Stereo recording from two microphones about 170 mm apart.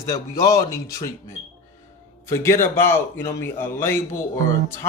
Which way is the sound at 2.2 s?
15° left (ahead or behind).